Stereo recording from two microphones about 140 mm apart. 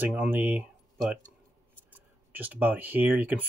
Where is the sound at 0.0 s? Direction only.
10° right (ahead or behind).